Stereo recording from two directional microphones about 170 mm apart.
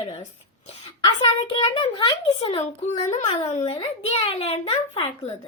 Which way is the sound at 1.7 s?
30° left (ahead or behind).